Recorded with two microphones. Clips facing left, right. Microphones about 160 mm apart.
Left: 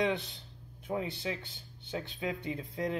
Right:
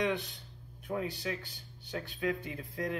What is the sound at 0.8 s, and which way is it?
Speech, 20° left (ahead or behind).